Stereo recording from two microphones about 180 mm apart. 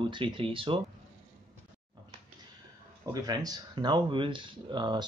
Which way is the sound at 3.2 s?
20° right (ahead or behind).